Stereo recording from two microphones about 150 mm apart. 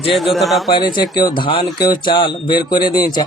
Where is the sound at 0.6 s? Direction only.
30° left (ahead or behind).